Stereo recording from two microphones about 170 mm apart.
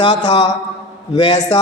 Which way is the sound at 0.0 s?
25° left (ahead or behind).